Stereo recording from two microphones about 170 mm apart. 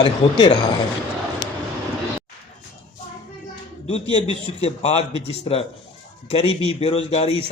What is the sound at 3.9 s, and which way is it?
A man's voice, 35° left (ahead or behind).